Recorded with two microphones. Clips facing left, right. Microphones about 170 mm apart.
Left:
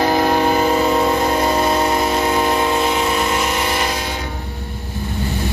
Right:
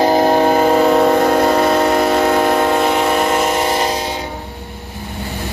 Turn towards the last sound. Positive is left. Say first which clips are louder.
# right 4 dB
turn(degrees=-35)  # may be behind; listen again after turning